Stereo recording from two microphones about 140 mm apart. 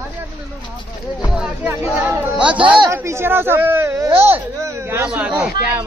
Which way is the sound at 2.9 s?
20° right (ahead or behind).